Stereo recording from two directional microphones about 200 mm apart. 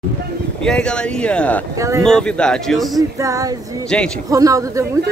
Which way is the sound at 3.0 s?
15° right (ahead or behind).